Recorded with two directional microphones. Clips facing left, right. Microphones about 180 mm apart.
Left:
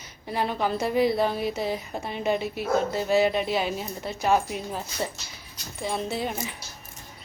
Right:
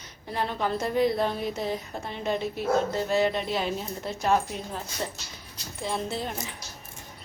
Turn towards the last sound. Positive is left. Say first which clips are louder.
# left 3 dB
turn(degrees=5)  # may be behind; listen again after turning